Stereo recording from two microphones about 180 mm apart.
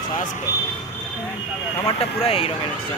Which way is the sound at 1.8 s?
30° left (ahead or behind).